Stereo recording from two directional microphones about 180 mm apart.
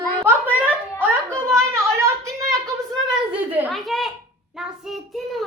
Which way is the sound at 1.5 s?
15° right (ahead or behind).